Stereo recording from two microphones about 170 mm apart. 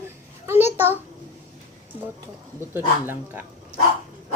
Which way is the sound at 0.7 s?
10° right (ahead or behind).